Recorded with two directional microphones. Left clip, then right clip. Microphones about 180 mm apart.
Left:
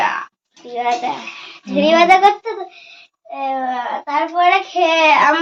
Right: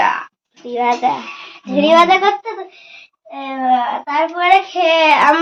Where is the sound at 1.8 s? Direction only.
15° right (ahead or behind).